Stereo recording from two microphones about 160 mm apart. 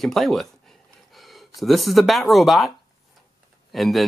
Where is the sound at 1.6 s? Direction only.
Centre (ahead or behind).